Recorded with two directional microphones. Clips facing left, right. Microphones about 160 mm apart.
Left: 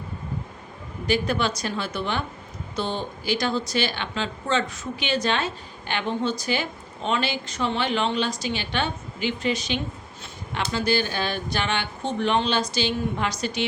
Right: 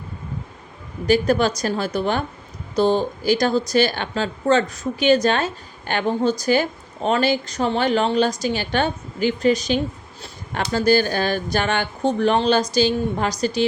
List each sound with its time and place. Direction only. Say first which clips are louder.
1.0 s a woman's voice: right 6 dB; 40° right (ahead or behind)